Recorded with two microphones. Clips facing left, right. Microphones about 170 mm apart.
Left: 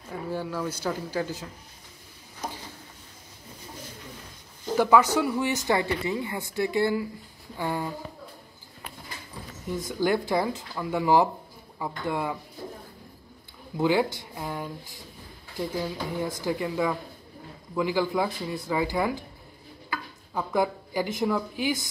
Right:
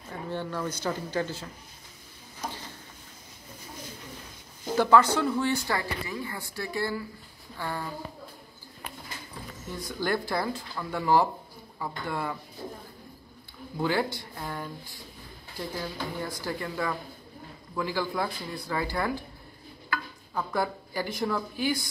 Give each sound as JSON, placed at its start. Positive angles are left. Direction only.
{"t": 0.3, "sound": "speech", "side_deg": 5}
{"t": 4.7, "sound": "a woman's voice", "side_deg": 15}
{"t": 9.7, "sound": "speech", "side_deg": 15}
{"t": 13.7, "sound": "speech", "side_deg": 15}